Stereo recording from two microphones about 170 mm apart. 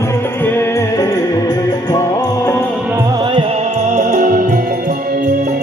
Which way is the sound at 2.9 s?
25° right (ahead or behind).